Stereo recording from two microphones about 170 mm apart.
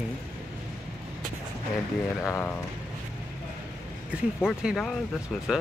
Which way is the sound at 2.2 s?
15° left (ahead or behind).